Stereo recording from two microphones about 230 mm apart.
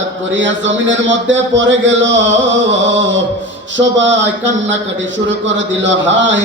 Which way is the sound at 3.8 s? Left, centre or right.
Right.